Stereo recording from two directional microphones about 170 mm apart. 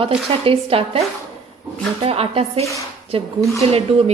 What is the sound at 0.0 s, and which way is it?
A woman's voice, 35° right (ahead or behind).